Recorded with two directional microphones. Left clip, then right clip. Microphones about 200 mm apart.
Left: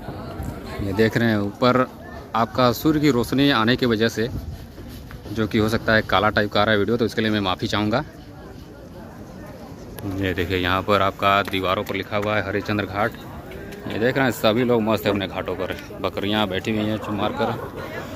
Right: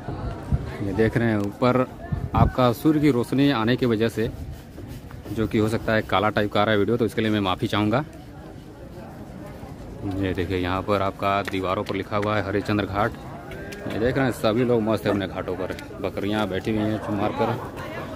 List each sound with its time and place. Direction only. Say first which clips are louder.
0.8 s speech: left 2 dB; centre (ahead or behind)
5.3 s speech: left 2 dB; 5° right (ahead or behind)
10.2 s speech: left 4 dB; 10° right (ahead or behind)
11.9 s speech: left 2 dB; 20° right (ahead or behind)
13.9 s speech: left 3 dB; 5° right (ahead or behind)